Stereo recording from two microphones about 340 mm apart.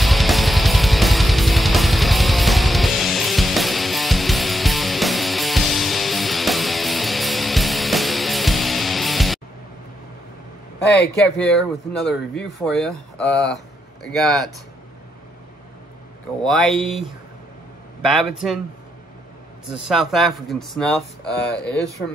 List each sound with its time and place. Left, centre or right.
0.0 s music: centre
11.2 s speech: centre
16.4 s speech: centre
19.7 s speech: centre
21.5 s speech: left